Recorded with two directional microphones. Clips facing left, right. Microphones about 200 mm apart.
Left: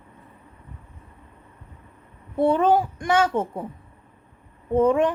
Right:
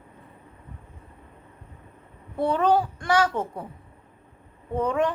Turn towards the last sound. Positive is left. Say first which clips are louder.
# left 6 dB
turn(degrees=25)  # may be behind; listen again after turning